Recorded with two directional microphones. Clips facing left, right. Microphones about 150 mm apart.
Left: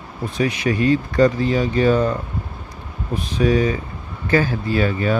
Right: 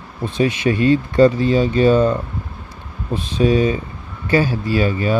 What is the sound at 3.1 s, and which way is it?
Speech, 25° right (ahead or behind).